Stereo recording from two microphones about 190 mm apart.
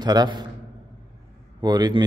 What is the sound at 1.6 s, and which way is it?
Speech, 20° right (ahead or behind).